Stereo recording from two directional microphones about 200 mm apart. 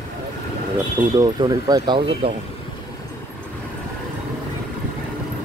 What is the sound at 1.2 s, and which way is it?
Speech, 20° right (ahead or behind).